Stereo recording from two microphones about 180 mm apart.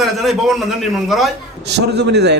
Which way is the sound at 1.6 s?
70° right (ahead or behind).